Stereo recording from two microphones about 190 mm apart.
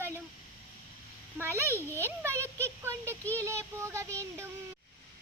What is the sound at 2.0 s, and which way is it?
A child's voice, 15° right (ahead or behind).